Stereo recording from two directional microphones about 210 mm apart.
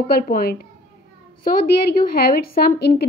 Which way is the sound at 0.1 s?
45° left (ahead or behind).